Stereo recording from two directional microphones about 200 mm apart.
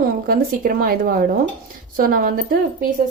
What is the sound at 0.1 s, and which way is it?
Speech, 45° right (ahead or behind).